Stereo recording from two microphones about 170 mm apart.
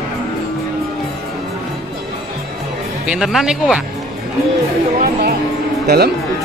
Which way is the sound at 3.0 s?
5° right (ahead or behind).